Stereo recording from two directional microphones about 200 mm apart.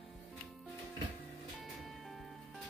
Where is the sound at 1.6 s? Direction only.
Centre (ahead or behind).